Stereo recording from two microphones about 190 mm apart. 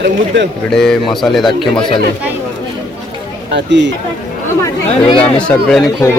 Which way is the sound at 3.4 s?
65° right (ahead or behind).